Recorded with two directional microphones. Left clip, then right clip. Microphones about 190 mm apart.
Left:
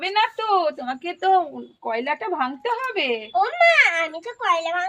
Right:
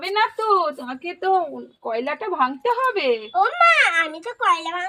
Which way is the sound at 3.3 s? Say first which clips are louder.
Even; 15° right (ahead or behind).